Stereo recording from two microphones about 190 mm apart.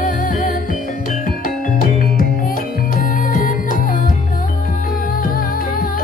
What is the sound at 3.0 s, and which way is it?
Music, 45° left (ahead or behind).